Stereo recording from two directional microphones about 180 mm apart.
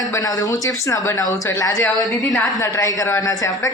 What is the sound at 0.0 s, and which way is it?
Speech, 20° left (ahead or behind).